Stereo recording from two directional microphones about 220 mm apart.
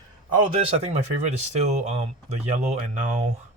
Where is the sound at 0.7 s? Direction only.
30° right (ahead or behind).